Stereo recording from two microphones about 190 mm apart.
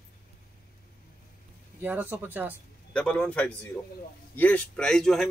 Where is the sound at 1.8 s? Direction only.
10° right (ahead or behind).